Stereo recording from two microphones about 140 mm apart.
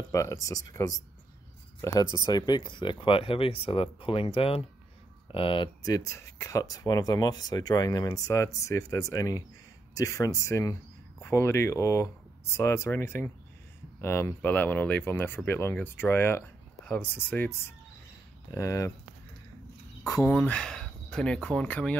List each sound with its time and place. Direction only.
0.1 s speech: 20° left (ahead or behind); by 5.7 s 40° left (ahead or behind)
5.9 s speech: 25° left (ahead or behind)
18.5 s speech: 25° left (ahead or behind)
20.0 s speech: 25° left (ahead or behind)
20.3 s speech: 5° left (ahead or behind)